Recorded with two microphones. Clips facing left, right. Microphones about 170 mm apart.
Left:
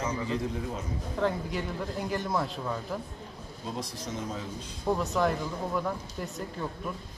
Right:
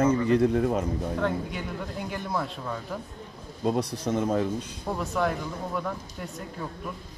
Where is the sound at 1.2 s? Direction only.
Centre (ahead or behind).